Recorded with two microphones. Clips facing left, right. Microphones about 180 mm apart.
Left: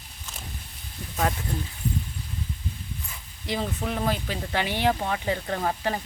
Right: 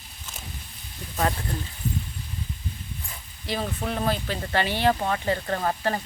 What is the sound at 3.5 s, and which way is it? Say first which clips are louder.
Speech: even; 20° left (ahead or behind).